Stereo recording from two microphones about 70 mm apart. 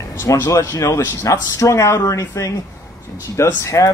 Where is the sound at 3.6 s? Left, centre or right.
Left.